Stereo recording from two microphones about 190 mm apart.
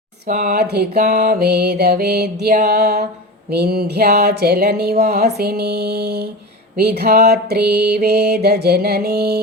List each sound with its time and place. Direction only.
0.3 s music: 55° right (ahead or behind)